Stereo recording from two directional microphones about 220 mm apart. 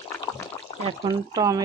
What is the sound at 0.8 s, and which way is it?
Speech, 20° right (ahead or behind).